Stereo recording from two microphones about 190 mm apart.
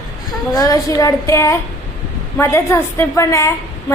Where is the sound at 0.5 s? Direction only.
20° left (ahead or behind).